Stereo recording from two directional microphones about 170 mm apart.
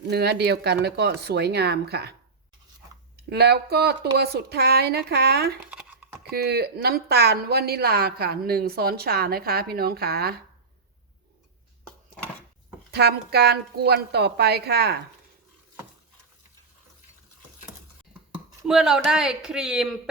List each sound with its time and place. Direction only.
0.1 s speech: 75° right (ahead or behind)
3.2 s speech: 70° right (ahead or behind)
5.7 s crumpling: 5° right (ahead or behind)
6.3 s speech: 70° right (ahead or behind)
12.9 s speech: 70° right (ahead or behind)
18.6 s speech: 5° right (ahead or behind)